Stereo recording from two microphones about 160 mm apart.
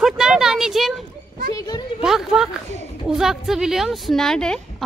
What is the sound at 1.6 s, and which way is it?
Speech, 25° left (ahead or behind).